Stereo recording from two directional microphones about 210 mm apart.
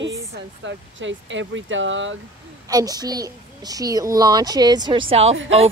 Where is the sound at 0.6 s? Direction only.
60° right (ahead or behind).